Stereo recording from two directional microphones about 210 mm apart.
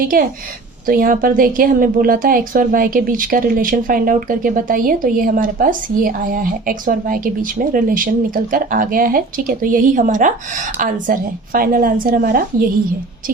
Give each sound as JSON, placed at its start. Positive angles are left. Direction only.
{"t": 0.0, "sound": "a woman's voice", "side_deg": -40}